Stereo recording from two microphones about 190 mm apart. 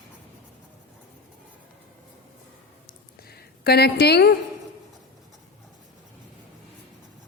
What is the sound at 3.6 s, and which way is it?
Speech, 55° left (ahead or behind).